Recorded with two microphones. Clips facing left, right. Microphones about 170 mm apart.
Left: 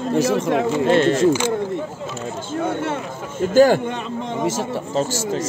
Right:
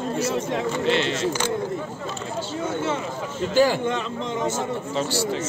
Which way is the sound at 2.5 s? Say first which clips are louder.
Left 4 dB; 55° left (ahead or behind).